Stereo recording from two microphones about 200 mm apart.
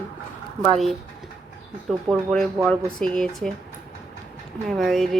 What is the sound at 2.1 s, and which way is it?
Speech, centre (ahead or behind).